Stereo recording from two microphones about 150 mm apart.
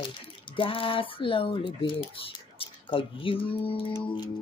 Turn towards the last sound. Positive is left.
turn(degrees=30)  # may be behind; listen again after turning